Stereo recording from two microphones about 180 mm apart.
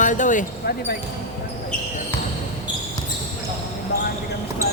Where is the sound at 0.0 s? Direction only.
45° left (ahead or behind).